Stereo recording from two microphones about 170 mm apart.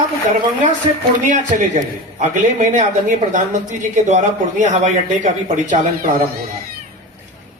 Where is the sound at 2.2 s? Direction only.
45° right (ahead or behind).